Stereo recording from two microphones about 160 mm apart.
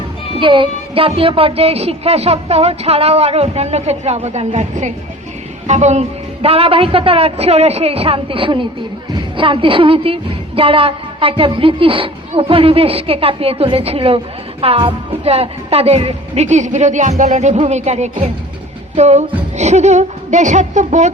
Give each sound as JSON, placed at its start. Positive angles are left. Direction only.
{"t": 0.3, "sound": "a woman's voice", "side_deg": -30}